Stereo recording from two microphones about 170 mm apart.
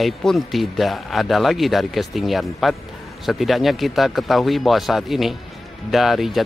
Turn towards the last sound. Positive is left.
turn(degrees=0)  # may be behind; listen again after turning